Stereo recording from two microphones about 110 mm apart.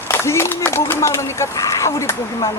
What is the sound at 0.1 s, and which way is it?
Speech, 25° left (ahead or behind).